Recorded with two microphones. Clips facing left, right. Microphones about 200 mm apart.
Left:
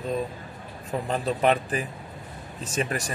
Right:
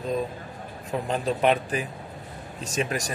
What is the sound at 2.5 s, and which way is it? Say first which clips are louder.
Speech: even; 35° right (ahead or behind).